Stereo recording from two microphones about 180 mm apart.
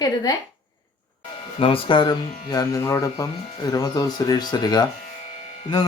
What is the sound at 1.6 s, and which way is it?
Speech, 30° left (ahead or behind).